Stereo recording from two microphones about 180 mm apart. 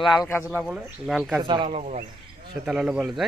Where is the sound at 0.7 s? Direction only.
10° right (ahead or behind).